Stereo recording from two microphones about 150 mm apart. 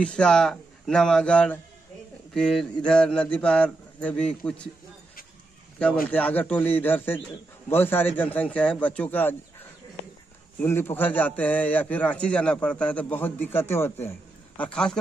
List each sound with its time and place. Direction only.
0.0 s a man's voice: 5° left (ahead or behind)
6.0 s a man's voice: 10° left (ahead or behind)
10.6 s a man's voice: 15° left (ahead or behind)